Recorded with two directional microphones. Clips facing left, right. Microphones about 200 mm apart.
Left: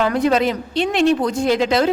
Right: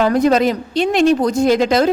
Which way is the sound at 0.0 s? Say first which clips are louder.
Right 3 dB; 40° right (ahead or behind).